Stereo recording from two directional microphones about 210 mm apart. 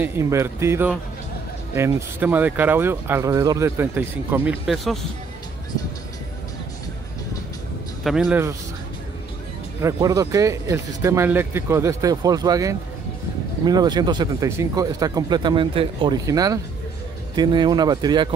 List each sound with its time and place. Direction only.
0.0 s speech: 10° right (ahead or behind)
8.0 s a man's voice: centre (ahead or behind)
9.8 s speech: 15° right (ahead or behind)